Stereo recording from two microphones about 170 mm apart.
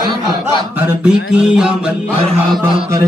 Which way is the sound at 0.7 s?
5° right (ahead or behind).